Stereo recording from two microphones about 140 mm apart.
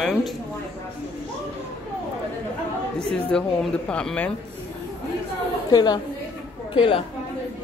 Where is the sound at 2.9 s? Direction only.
5° left (ahead or behind).